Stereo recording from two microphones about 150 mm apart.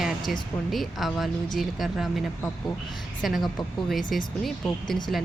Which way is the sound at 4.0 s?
65° left (ahead or behind).